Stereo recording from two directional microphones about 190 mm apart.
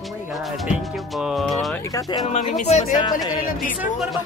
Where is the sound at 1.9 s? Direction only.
20° left (ahead or behind).